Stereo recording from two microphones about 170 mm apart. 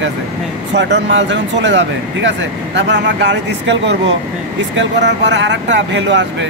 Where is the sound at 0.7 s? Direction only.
90° right.